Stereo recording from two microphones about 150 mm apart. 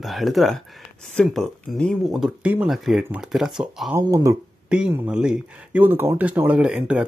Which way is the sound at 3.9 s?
20° right (ahead or behind).